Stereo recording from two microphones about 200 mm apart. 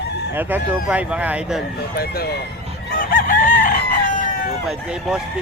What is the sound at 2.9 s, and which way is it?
Chicken, 45° left (ahead or behind).